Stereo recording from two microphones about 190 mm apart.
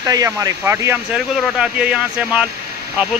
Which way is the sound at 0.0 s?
20° right (ahead or behind).